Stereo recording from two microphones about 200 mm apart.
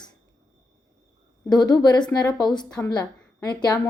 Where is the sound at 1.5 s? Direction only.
20° left (ahead or behind).